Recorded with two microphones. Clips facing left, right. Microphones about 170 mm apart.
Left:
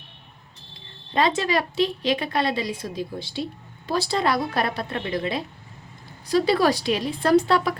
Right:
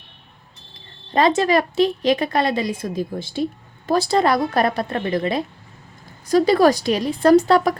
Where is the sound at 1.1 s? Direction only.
45° right (ahead or behind).